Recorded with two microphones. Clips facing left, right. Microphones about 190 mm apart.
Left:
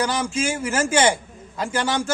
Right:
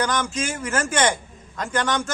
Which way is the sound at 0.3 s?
10° left (ahead or behind).